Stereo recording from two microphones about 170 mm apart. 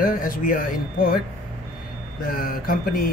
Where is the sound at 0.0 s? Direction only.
55° left (ahead or behind).